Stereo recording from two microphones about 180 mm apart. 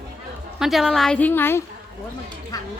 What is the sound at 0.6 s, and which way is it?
A woman's voice, centre (ahead or behind).